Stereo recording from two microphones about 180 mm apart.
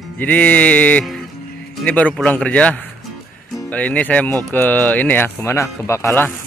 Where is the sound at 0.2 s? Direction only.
10° left (ahead or behind).